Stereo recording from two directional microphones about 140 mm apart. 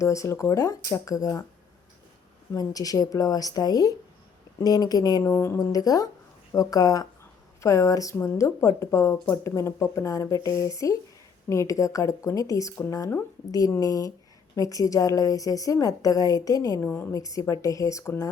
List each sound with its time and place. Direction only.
0.0 s a woman's voice: 20° left (ahead or behind)
2.6 s a woman's voice: 25° left (ahead or behind)